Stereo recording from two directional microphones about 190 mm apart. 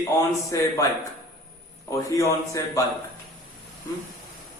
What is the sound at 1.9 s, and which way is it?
Speech, 15° left (ahead or behind).